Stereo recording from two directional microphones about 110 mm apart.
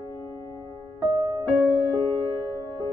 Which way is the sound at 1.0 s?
35° right (ahead or behind).